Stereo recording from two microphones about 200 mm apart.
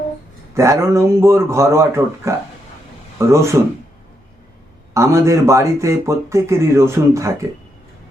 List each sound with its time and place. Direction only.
0.5 s speech: 15° right (ahead or behind)
4.9 s speech: 15° right (ahead or behind)